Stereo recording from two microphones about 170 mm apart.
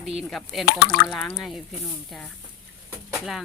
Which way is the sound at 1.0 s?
Centre (ahead or behind).